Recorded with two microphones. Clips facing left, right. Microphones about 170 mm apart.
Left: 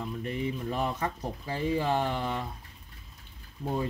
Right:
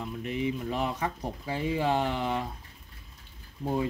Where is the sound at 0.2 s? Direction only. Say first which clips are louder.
Right 3 dB; 15° right (ahead or behind).